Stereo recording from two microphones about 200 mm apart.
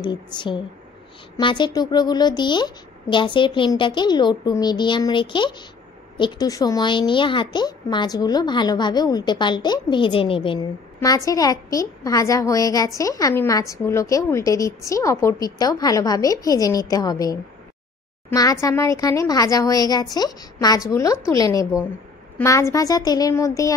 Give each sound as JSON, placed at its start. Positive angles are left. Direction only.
{"t": 0.0, "sound": "a woman's voice", "side_deg": 20}